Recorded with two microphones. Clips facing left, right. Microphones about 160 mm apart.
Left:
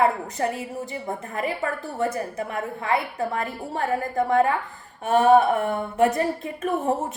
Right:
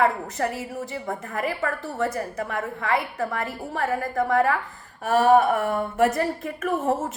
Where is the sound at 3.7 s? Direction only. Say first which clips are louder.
Even; 25° left (ahead or behind).